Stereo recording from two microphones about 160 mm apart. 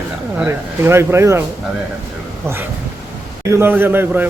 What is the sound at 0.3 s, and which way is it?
Speech, 15° right (ahead or behind).